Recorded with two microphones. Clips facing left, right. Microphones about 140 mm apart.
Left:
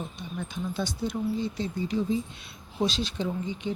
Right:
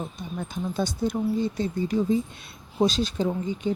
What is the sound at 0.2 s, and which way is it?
A woman's voice, 45° right (ahead or behind).